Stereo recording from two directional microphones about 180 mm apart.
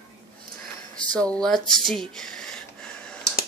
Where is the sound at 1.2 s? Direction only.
5° left (ahead or behind).